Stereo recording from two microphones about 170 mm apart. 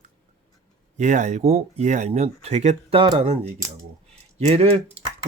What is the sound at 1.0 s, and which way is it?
Speech, 45° right (ahead or behind).